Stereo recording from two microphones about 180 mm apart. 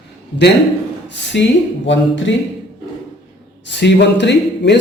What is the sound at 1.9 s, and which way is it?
Speech, 90° left.